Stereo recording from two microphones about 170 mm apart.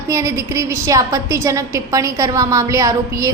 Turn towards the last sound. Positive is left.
turn(degrees=-20)  # may be behind; listen again after turning